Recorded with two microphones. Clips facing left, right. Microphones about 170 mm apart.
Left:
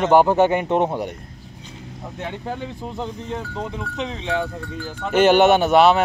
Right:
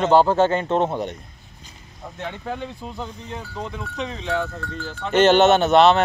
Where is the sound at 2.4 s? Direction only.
20° left (ahead or behind).